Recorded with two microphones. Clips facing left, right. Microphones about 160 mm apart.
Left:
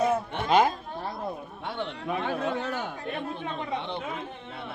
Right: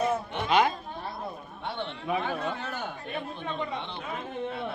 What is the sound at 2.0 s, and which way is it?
Speech, 5° right (ahead or behind).